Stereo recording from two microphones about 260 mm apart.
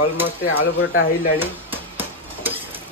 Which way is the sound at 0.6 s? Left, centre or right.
Left.